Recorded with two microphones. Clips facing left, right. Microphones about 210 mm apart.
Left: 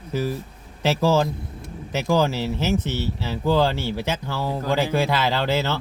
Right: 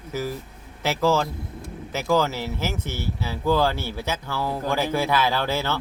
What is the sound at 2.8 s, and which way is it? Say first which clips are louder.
Speech: left 4 dB; 10° right (ahead or behind).